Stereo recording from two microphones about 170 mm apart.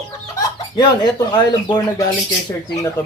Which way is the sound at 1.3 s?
25° left (ahead or behind).